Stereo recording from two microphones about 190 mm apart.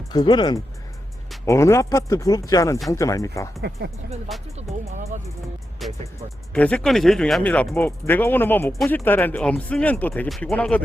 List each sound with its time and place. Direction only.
0.1 s speech: 25° left (ahead or behind)
4.5 s music: 35° right (ahead or behind)
5.8 s speech: centre (ahead or behind)